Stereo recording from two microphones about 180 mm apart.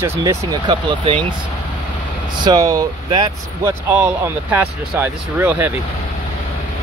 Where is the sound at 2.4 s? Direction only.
20° right (ahead or behind).